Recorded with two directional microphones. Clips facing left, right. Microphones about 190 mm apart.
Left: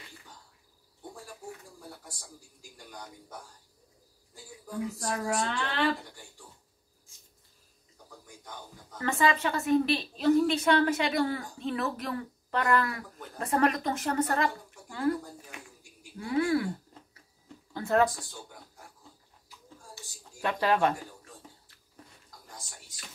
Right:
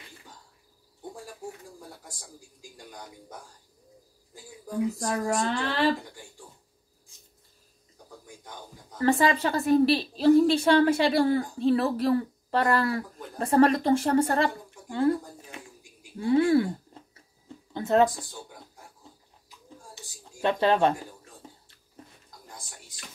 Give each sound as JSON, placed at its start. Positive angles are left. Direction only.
{"t": 4.6, "sound": "a woman's voice", "side_deg": -40}
{"t": 8.9, "sound": "a woman's voice", "side_deg": -35}
{"t": 16.2, "sound": "speech", "side_deg": -30}
{"t": 17.7, "sound": "speech", "side_deg": -20}
{"t": 20.0, "sound": "a sound", "side_deg": -20}
{"t": 20.4, "sound": "speech", "side_deg": -25}